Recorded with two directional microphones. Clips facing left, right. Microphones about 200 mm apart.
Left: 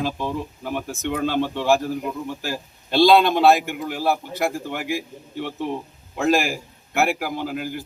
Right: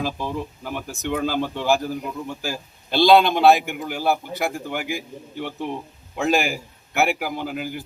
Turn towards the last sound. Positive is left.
turn(degrees=0)  # may be behind; listen again after turning